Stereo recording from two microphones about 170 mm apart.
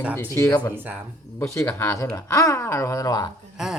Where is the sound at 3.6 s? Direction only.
Centre (ahead or behind).